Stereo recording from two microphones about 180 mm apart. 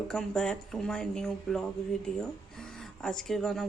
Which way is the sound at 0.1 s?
5° left (ahead or behind).